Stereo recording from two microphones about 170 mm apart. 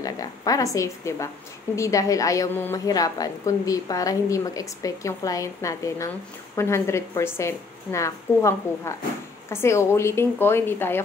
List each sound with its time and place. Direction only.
0.0 s a woman's voice: 20° left (ahead or behind)